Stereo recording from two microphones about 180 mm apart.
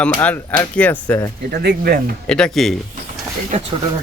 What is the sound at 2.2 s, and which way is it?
Speech, 5° left (ahead or behind).